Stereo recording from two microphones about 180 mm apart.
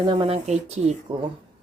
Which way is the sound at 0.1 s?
25° right (ahead or behind).